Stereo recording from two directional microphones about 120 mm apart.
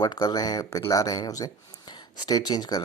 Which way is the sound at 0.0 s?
35° left (ahead or behind).